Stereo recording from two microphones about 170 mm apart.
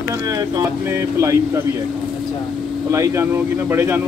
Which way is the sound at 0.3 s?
20° right (ahead or behind).